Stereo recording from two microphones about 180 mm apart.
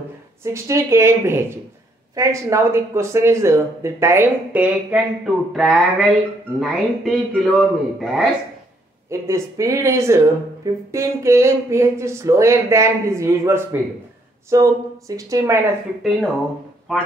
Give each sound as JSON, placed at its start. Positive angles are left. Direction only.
{"t": 0.4, "sound": "a man's voice", "side_deg": -15}
{"t": 9.1, "sound": "speech", "side_deg": -15}
{"t": 16.9, "sound": "a man's voice", "side_deg": 0}